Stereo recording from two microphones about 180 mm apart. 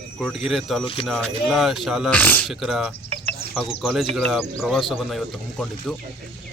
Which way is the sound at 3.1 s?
30° right (ahead or behind).